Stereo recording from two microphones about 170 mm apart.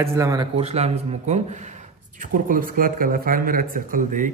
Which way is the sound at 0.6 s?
40° right (ahead or behind).